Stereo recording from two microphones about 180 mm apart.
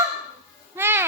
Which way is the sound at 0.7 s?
15° right (ahead or behind).